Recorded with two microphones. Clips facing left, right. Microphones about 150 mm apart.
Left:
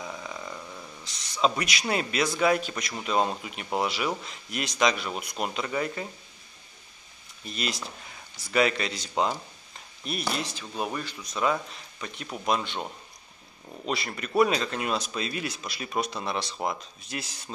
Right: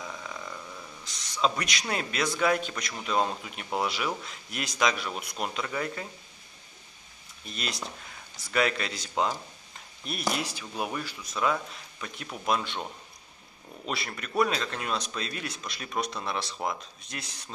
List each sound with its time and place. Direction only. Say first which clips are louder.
0.0 s a sound: left 2 dB; 10° left (ahead or behind)
1.0 s a man's voice: left 2 dB; centre (ahead or behind)
7.4 s a man's voice: left 3 dB; centre (ahead or behind)
10.2 s a man's voice: right 3 dB; 10° right (ahead or behind)